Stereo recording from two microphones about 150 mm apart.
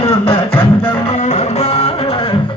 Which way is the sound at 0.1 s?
35° left (ahead or behind).